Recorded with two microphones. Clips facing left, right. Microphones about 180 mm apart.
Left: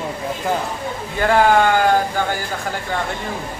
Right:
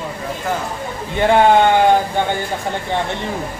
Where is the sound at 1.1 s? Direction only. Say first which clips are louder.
Right 3 dB; 25° right (ahead or behind).